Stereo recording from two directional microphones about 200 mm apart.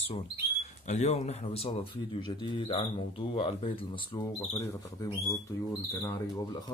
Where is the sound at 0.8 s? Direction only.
35° left (ahead or behind).